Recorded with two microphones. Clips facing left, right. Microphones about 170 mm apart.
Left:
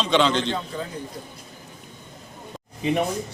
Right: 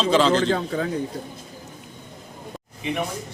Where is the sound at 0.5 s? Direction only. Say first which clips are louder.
Right 5 dB; 70° right (ahead or behind).